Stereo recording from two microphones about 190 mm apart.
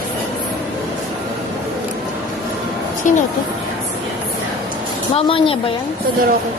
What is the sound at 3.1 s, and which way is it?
Speech, 40° left (ahead or behind).